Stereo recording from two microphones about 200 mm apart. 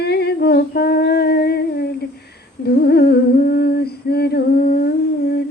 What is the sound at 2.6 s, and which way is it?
Humming, 55° left (ahead or behind).